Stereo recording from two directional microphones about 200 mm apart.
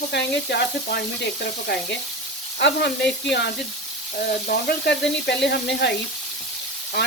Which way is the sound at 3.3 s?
55° left (ahead or behind).